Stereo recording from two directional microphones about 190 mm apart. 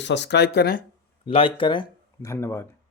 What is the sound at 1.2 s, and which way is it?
Speech, 30° left (ahead or behind).